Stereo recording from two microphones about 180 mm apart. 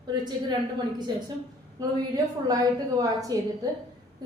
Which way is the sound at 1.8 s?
20° right (ahead or behind).